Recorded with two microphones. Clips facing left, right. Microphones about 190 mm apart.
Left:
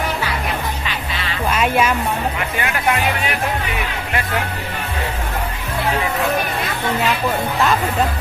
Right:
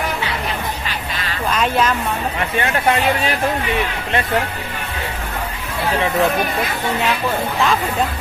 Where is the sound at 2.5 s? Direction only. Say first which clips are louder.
Right 4 dB; 30° right (ahead or behind).